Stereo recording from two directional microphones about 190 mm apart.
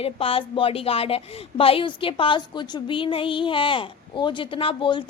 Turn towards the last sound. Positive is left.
turn(degrees=25)  # may be behind; listen again after turning